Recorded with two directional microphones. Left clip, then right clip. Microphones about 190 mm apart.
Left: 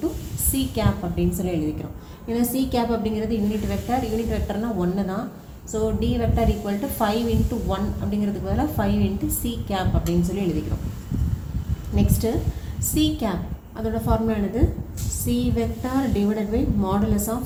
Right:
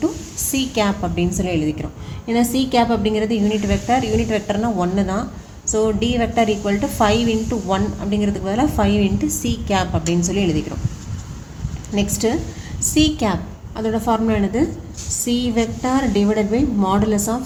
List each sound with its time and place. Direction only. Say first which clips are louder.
0.5 s a woman's voice: right 6 dB; 55° right (ahead or behind)
12.2 s a woman's voice: right 5 dB; 55° right (ahead or behind)